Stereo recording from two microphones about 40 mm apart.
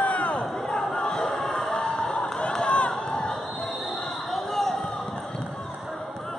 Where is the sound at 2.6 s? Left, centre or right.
Left.